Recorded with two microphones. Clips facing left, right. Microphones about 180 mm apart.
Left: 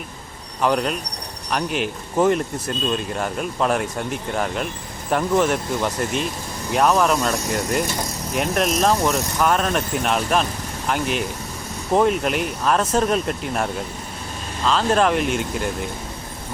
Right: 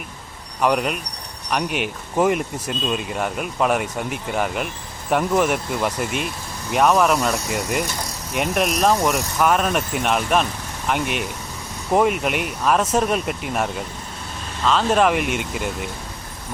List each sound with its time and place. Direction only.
0.6 s speech: 5° right (ahead or behind)